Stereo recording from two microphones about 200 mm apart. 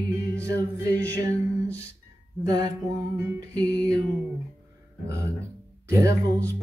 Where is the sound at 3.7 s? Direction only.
5° left (ahead or behind).